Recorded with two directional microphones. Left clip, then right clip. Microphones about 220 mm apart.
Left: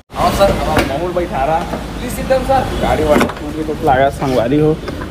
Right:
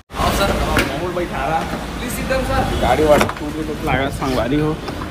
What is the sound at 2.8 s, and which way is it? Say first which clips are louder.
Speech: left 1 dB; 30° right (ahead or behind).